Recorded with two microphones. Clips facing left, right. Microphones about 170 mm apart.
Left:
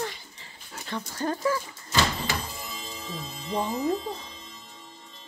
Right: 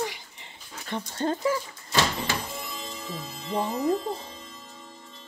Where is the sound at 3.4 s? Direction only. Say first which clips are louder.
Right 1 dB; 55° right (ahead or behind).